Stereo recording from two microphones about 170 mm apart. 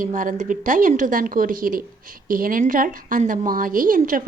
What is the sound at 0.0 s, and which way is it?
A woman's voice, 50° right (ahead or behind).